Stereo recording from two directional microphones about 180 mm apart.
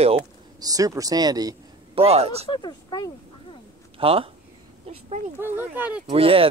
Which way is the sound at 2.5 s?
25° left (ahead or behind).